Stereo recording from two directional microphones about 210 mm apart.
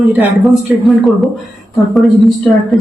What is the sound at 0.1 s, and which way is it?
Speech, 10° right (ahead or behind).